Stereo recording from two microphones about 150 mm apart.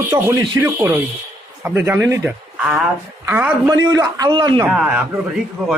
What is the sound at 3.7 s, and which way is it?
Speech, 25° right (ahead or behind).